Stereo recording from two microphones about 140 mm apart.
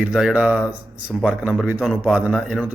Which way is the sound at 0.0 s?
5° right (ahead or behind).